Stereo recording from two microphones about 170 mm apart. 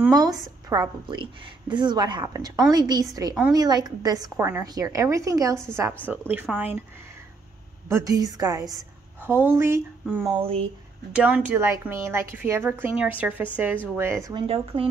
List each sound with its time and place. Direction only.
0.1 s a woman's voice: 25° right (ahead or behind)
7.9 s a woman's voice: 20° right (ahead or behind)
10.3 s speech: 35° right (ahead or behind)
11.1 s a woman's voice: 10° right (ahead or behind)
14.3 s speech: 35° right (ahead or behind)